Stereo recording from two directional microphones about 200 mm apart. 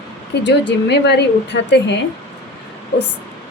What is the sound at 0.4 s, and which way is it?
A woman's voice, 60° left (ahead or behind).